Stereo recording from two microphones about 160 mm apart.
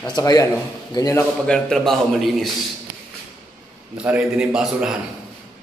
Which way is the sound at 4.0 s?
5° right (ahead or behind).